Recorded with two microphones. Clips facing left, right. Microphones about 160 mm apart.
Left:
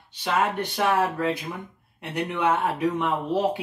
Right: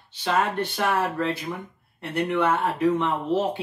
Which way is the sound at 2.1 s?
15° left (ahead or behind).